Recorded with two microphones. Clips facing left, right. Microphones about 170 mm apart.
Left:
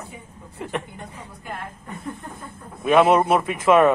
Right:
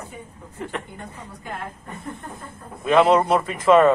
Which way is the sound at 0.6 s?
15° left (ahead or behind).